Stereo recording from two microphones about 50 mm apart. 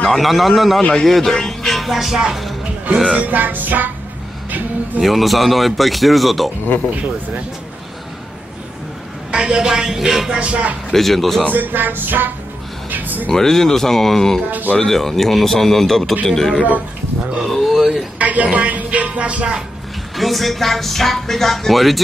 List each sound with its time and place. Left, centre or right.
0.0 s speech: centre
3.2 s speech: right
4.5 s music: right
5.0 s speech: centre
9.3 s music: centre
10.4 s speech: right
10.9 s speech: centre
11.5 s speech: right
12.9 s a sound: right
13.3 s a man's voice: centre
17.5 s a sound: centre
18.2 s a woman's voice: right
20.2 s speech: centre